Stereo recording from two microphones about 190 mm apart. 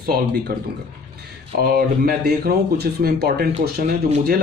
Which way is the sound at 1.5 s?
55° right (ahead or behind).